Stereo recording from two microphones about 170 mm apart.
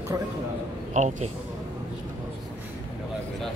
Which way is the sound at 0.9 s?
45° right (ahead or behind).